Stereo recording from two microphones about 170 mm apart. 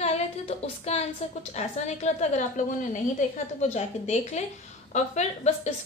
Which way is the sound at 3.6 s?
40° left (ahead or behind).